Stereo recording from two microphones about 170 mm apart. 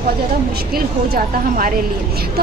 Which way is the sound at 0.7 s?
60° right (ahead or behind).